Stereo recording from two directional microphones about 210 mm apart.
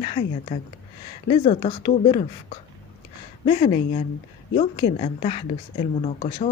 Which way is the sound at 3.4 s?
30° left (ahead or behind).